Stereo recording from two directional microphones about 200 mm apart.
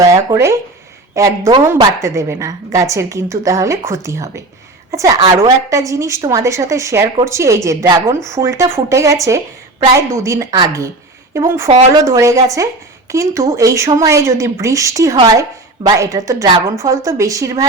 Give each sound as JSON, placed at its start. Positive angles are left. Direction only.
{"t": 0.0, "sound": "a woman's voice", "side_deg": -15}